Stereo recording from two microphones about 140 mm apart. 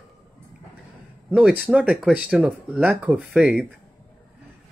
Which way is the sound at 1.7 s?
5° right (ahead or behind).